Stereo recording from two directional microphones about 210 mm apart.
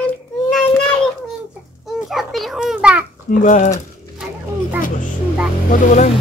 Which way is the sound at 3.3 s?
40° left (ahead or behind).